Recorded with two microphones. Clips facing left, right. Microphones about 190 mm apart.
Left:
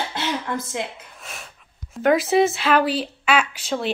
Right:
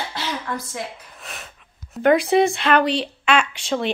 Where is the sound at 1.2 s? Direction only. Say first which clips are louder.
Right 1 dB; centre (ahead or behind).